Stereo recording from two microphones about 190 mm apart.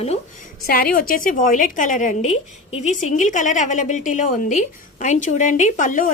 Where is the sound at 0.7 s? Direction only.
50° left (ahead or behind).